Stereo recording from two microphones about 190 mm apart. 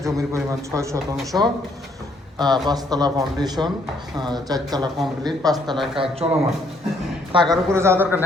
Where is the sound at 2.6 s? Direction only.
20° right (ahead or behind).